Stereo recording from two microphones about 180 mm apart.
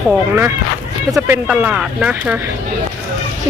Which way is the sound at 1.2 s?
15° right (ahead or behind).